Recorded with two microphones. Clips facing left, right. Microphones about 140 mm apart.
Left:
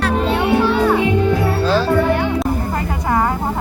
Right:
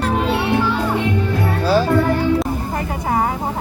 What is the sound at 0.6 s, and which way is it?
Music, 70° left (ahead or behind).